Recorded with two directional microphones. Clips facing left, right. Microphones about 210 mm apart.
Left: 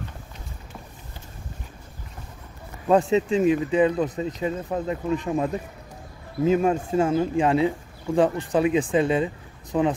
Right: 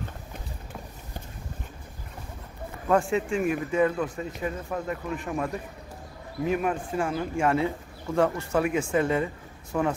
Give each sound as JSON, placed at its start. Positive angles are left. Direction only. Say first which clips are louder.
{"t": 2.9, "sound": "speech", "louder": "left 5 dB", "side_deg": 20}